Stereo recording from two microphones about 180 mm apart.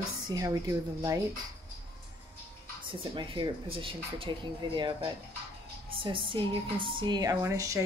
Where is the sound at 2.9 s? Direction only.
25° right (ahead or behind).